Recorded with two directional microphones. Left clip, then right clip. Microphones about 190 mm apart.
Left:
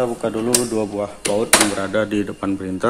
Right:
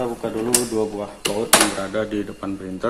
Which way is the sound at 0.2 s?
55° left (ahead or behind).